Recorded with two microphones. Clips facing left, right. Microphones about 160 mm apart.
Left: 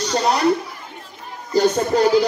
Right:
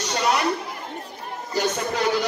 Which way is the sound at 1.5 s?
35° left (ahead or behind).